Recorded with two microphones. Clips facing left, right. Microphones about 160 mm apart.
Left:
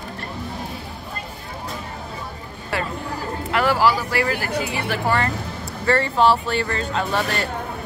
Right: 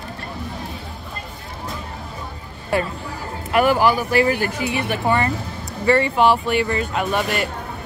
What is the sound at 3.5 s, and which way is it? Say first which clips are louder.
Speech: right 3 dB; 20° right (ahead or behind).